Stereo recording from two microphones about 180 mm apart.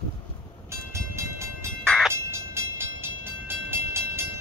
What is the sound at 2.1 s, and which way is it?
Train, 15° right (ahead or behind).